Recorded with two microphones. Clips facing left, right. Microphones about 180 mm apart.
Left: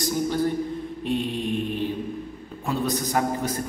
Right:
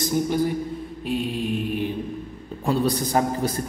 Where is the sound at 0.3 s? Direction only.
10° right (ahead or behind).